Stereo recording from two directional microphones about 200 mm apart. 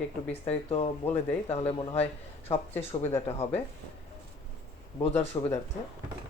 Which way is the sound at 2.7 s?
10° left (ahead or behind).